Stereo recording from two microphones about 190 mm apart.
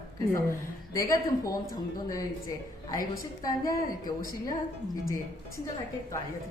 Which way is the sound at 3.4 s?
20° left (ahead or behind).